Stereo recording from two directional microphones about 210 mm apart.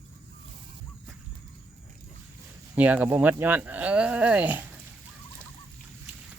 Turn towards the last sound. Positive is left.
turn(degrees=-5)  # may be behind; listen again after turning